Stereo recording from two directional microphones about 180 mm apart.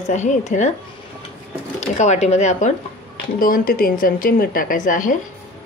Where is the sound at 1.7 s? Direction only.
40° left (ahead or behind).